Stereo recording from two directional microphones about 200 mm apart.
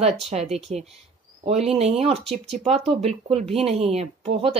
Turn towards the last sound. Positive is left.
turn(degrees=-30)  # may be behind; listen again after turning